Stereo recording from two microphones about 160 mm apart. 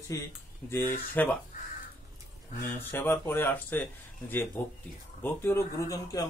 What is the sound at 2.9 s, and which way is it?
Speech, 15° left (ahead or behind).